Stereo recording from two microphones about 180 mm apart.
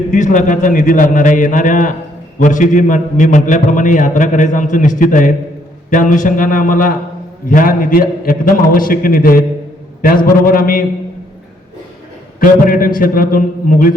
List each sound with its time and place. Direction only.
0.1 s a man's voice: 45° left (ahead or behind)
12.4 s a man's voice: 50° left (ahead or behind)